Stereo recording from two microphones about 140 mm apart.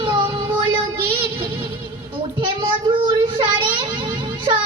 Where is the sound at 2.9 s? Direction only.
35° right (ahead or behind).